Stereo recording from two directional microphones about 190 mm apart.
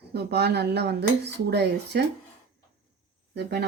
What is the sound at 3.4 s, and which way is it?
Speech, 60° right (ahead or behind).